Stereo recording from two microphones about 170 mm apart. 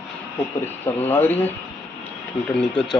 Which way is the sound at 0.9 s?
10° left (ahead or behind).